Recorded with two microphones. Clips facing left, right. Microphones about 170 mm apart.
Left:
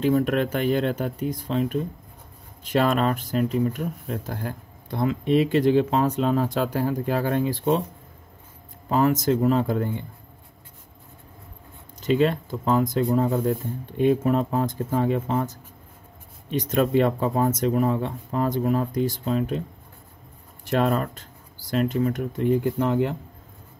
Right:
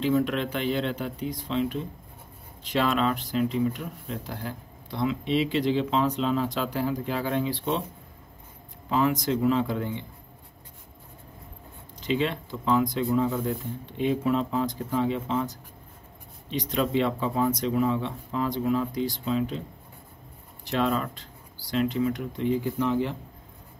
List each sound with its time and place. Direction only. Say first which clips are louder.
0.0 s speech: left 3 dB; 50° left (ahead or behind)
8.8 s speech: left 4 dB; 45° left (ahead or behind)
12.0 s speech: left 6 dB; 45° left (ahead or behind)
20.6 s speech: left 4 dB; 50° left (ahead or behind)